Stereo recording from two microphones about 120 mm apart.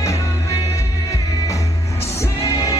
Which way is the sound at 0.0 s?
25° left (ahead or behind).